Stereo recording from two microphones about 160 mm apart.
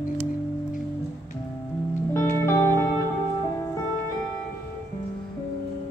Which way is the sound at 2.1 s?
15° left (ahead or behind).